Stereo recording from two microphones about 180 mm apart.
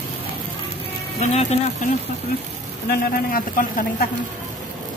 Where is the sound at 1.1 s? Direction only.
35° left (ahead or behind).